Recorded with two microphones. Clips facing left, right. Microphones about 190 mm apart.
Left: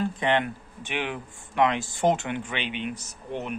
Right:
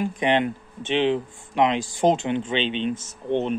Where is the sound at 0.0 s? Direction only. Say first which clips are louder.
Right 3 dB; 15° right (ahead or behind).